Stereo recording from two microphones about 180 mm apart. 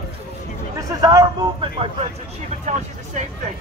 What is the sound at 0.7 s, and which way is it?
Speech, 20° right (ahead or behind).